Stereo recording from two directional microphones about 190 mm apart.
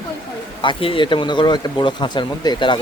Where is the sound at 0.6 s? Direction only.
25° left (ahead or behind).